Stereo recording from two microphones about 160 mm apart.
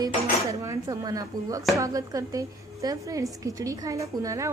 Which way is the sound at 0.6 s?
20° right (ahead or behind).